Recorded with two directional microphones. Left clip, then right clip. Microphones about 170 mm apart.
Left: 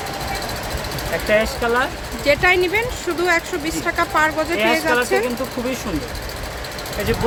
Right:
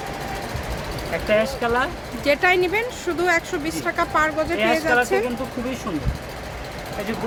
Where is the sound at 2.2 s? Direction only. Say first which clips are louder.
Left 2 dB; 10° right (ahead or behind).